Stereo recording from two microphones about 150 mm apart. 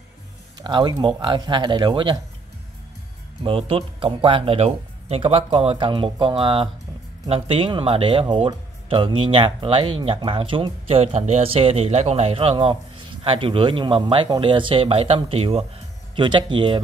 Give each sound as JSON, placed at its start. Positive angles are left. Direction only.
{"t": 0.6, "sound": "speech", "side_deg": -30}
{"t": 3.4, "sound": "speech", "side_deg": -40}